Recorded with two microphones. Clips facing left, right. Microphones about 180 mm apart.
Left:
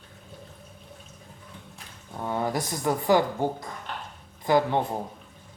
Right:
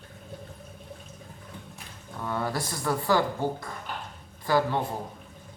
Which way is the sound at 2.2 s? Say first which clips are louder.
Left 2 dB; 20° left (ahead or behind).